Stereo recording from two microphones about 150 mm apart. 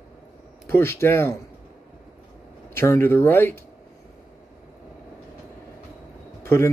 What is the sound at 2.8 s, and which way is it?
Speech, 15° left (ahead or behind).